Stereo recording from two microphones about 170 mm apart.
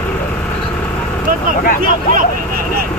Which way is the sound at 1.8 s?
55° right (ahead or behind).